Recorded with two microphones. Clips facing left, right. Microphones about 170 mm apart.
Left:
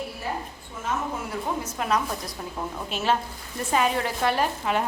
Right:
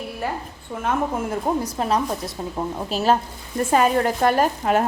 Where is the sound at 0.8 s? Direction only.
55° right (ahead or behind).